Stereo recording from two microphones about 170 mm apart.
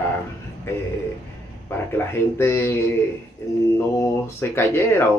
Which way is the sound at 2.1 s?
15° left (ahead or behind).